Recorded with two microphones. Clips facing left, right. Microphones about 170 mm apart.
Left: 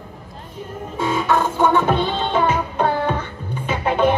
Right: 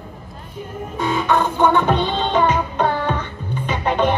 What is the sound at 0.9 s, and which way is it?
Music, 5° left (ahead or behind).